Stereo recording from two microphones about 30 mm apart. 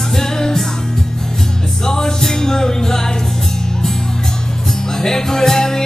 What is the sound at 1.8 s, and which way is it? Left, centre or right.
Music, centre.